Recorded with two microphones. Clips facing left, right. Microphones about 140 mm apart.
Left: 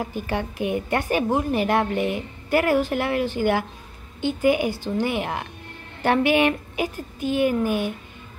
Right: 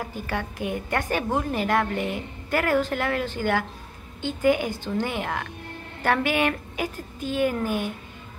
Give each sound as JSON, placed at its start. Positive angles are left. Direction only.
{"t": 0.0, "sound": "a woman's voice", "side_deg": 20}